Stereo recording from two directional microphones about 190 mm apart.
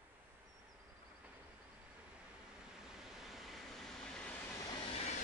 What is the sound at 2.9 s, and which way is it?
Vehicle, centre (ahead or behind).